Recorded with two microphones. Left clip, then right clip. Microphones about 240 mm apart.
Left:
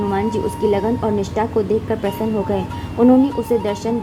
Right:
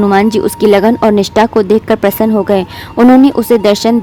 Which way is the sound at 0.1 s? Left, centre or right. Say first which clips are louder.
Right 10 dB; right.